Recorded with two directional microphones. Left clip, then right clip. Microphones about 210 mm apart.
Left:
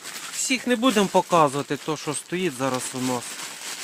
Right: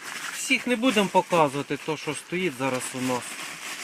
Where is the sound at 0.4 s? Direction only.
50° left (ahead or behind).